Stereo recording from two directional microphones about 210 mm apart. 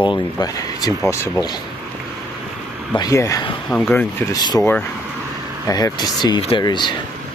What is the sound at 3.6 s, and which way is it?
Speech, 5° left (ahead or behind).